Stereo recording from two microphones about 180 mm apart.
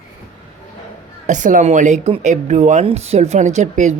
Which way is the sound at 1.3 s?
45° right (ahead or behind).